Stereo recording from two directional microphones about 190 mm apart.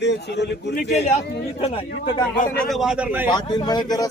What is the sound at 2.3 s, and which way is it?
Speech, 45° left (ahead or behind).